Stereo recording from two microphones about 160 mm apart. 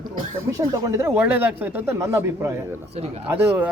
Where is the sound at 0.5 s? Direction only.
20° right (ahead or behind).